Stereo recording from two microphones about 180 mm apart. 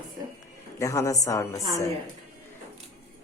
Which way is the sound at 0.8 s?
15° left (ahead or behind).